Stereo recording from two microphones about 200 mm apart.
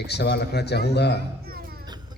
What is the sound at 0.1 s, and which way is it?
A man's voice, 55° left (ahead or behind).